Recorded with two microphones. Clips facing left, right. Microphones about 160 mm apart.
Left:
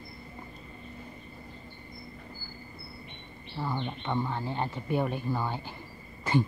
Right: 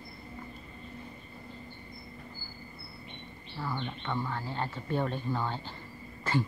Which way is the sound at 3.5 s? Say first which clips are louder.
Left 3 dB; 20° left (ahead or behind).